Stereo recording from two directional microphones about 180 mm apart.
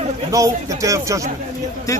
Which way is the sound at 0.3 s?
20° right (ahead or behind).